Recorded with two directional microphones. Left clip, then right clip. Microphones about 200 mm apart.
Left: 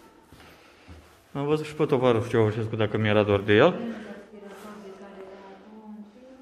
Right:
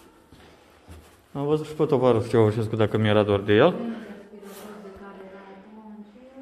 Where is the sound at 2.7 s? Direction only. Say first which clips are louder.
Right 2 dB; 15° right (ahead or behind).